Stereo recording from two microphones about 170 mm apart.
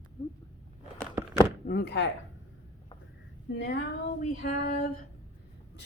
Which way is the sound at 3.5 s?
80° left.